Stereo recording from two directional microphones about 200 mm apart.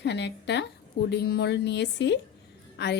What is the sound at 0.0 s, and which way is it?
A woman's voice, 60° left (ahead or behind).